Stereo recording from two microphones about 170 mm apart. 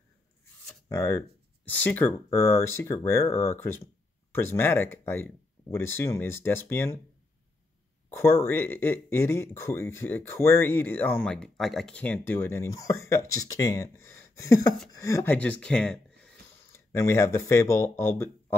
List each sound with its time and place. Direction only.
0.8 s speech: 20° left (ahead or behind)
8.1 s speech: 15° left (ahead or behind)
15.3 s speech: 5° left (ahead or behind)
16.7 s speech: 15° left (ahead or behind)